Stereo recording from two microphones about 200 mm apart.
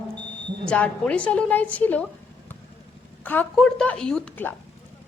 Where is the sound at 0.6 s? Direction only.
5° left (ahead or behind).